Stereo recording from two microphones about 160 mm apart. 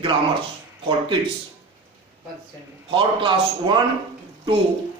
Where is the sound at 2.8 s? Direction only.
30° right (ahead or behind).